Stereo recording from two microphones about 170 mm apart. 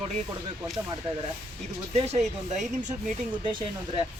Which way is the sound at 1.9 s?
40° right (ahead or behind).